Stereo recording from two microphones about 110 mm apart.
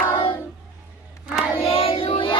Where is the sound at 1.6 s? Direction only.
60° left (ahead or behind).